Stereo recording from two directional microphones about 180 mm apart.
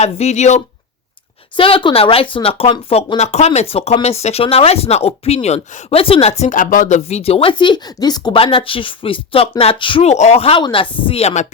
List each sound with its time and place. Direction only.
0.0 s speech: 35° left (ahead or behind)
3.2 s speech: 40° left (ahead or behind)